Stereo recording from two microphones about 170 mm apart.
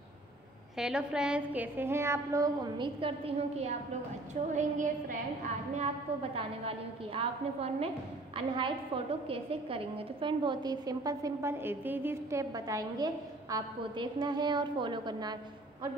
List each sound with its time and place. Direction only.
0.7 s a woman's voice: 5° right (ahead or behind); by 5.9 s 45° right (ahead or behind)
7.2 s a woman's voice: 35° right (ahead or behind)